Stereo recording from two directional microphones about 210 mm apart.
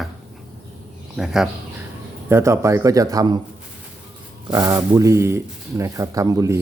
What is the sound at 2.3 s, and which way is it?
Speech, 15° right (ahead or behind).